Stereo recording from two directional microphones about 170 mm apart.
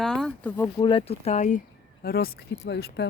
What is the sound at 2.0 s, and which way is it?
Speech, 65° left (ahead or behind).